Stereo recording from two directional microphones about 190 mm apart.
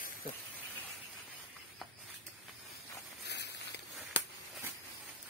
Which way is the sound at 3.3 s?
65° left (ahead or behind).